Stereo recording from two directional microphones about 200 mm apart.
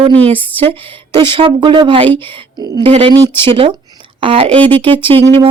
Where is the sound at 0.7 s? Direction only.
25° right (ahead or behind).